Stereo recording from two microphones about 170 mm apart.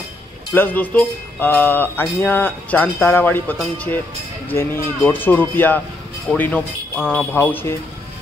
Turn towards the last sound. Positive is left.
turn(degrees=10)  # may be behind; listen again after turning